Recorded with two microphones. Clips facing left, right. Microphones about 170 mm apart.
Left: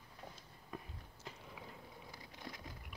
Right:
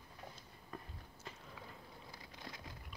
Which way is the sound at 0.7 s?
10° left (ahead or behind).